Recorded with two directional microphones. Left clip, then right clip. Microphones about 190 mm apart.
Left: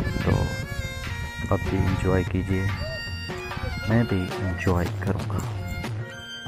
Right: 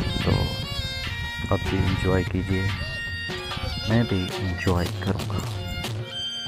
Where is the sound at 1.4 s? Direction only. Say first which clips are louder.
Even; 10° right (ahead or behind).